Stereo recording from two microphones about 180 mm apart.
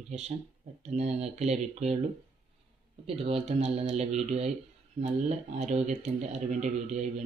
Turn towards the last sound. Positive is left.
turn(degrees=-40)  # may be behind; listen again after turning